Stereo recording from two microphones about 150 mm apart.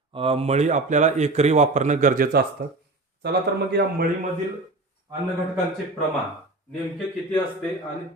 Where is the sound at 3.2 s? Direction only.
90° right.